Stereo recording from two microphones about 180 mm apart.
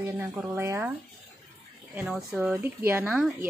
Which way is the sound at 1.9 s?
5° right (ahead or behind).